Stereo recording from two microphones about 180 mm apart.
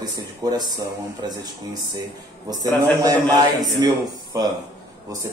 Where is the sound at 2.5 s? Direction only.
20° right (ahead or behind).